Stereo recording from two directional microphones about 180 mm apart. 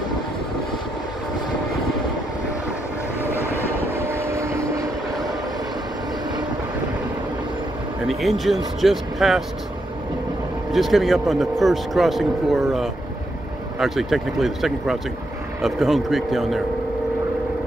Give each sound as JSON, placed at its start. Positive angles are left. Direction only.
{"t": 3.9, "sound": "vehicle", "side_deg": -15}
{"t": 8.1, "sound": "speech", "side_deg": 0}
{"t": 10.7, "sound": "speech", "side_deg": 0}